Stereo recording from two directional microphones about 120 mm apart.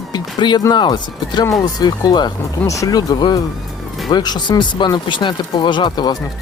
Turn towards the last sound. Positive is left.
turn(degrees=35)  # may be behind; listen again after turning